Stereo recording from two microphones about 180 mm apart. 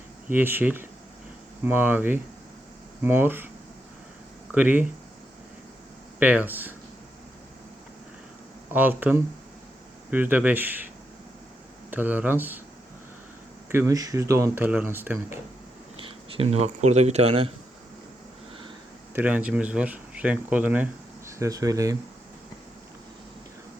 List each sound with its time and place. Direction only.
0.3 s speech: 10° right (ahead or behind)
4.5 s speech: 10° right (ahead or behind)
6.1 s speech: 10° right (ahead or behind)
8.7 s speech: 10° right (ahead or behind)
11.9 s speech: 10° right (ahead or behind)
13.7 s speech: 15° right (ahead or behind)
16.0 s speech: 30° right (ahead or behind)
19.1 s speech: 10° right (ahead or behind)